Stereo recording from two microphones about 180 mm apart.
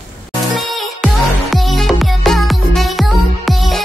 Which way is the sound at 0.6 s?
Centre (ahead or behind).